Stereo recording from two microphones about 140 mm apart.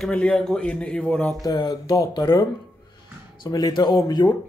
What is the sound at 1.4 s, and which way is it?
Speech, 30° left (ahead or behind).